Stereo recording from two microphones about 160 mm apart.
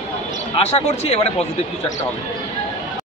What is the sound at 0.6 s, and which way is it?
Speech, 40° left (ahead or behind).